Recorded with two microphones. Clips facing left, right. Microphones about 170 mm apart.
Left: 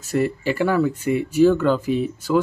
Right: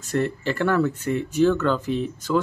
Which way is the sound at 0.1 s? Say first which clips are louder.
Left 3 dB; 10° left (ahead or behind).